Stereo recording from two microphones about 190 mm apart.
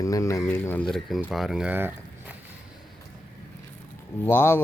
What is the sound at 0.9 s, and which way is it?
Speech, centre (ahead or behind).